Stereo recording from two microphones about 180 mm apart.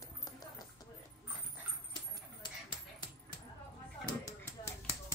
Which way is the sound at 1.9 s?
25° left (ahead or behind).